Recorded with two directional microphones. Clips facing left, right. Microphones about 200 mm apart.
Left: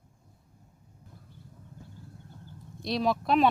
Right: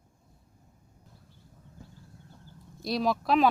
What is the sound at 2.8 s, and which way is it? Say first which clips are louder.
Speech: even; centre (ahead or behind).